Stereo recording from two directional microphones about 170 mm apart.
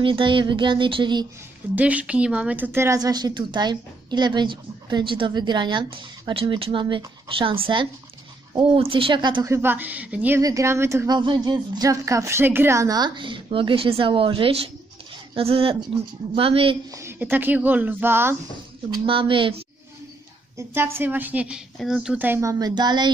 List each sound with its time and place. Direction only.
0.0 s a woman's voice: 30° right (ahead or behind)
1.8 s a woman's voice: 10° right (ahead or behind); by 16.7 s 35° right (ahead or behind)
16.9 s a woman's voice: 15° right (ahead or behind)
19.0 s a man's voice: 30° right (ahead or behind)
20.5 s a woman's voice: 15° right (ahead or behind)